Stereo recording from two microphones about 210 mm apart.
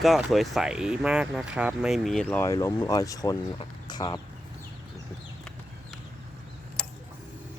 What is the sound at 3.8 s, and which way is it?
Chicken, 20° left (ahead or behind).